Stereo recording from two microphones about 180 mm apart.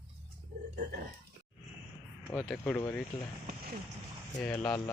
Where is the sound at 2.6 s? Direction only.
15° left (ahead or behind).